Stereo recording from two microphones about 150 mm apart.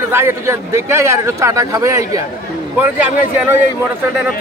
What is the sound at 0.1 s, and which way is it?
Speech, 15° right (ahead or behind).